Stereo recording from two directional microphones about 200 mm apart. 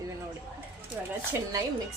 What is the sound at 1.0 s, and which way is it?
Speech, 5° right (ahead or behind).